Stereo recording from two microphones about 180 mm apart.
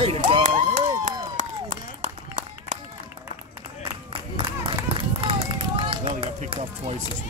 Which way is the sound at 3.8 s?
30° right (ahead or behind).